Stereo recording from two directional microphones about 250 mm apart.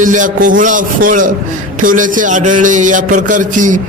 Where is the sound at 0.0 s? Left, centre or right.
Right.